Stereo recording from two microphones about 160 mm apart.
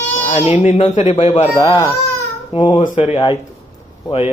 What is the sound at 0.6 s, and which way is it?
Speech, 45° left (ahead or behind).